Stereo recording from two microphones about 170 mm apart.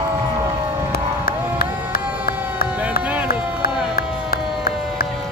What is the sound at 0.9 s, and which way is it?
Crowd, 65° left (ahead or behind).